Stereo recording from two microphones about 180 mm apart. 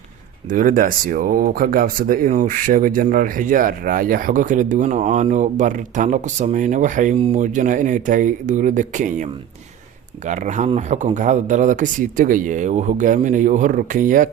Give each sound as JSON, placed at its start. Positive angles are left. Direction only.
{"t": 0.5, "sound": "speech", "side_deg": -45}
{"t": 10.2, "sound": "speech", "side_deg": -45}